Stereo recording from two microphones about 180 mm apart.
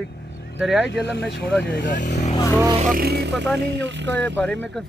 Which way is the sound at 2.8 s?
50° right (ahead or behind).